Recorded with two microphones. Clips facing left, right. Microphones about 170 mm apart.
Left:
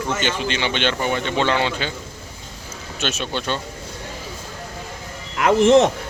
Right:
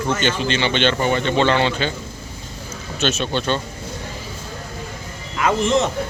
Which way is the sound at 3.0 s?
10° left (ahead or behind).